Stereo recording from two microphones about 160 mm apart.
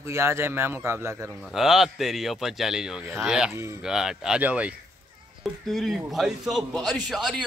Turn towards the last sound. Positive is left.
turn(degrees=0)  # may be behind; listen again after turning